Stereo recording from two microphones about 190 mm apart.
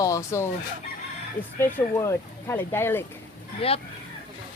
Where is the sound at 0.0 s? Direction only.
15° left (ahead or behind).